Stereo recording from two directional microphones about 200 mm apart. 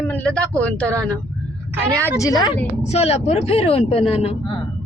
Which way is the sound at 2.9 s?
30° left (ahead or behind).